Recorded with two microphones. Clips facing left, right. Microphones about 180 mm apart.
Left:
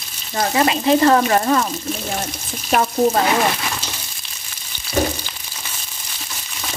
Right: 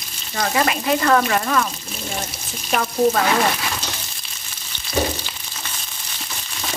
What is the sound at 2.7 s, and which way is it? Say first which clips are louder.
Frying: left 2 dB; 30° left (ahead or behind).